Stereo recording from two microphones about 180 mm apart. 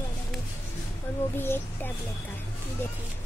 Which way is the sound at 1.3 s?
10° left (ahead or behind).